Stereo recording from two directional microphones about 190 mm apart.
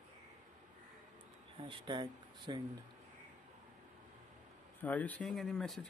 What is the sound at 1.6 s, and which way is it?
Speech, 25° right (ahead or behind).